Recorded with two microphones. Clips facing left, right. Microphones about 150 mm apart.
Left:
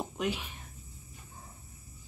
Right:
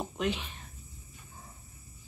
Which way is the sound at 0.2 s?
10° left (ahead or behind).